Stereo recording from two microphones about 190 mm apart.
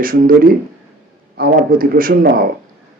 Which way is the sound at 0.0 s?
50° right (ahead or behind).